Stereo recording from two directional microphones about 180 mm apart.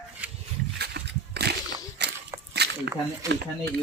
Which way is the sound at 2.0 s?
70° right (ahead or behind).